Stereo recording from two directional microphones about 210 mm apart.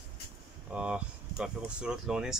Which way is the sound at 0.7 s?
5° right (ahead or behind).